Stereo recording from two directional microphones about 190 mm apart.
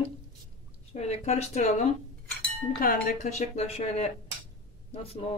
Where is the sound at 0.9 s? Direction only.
35° left (ahead or behind).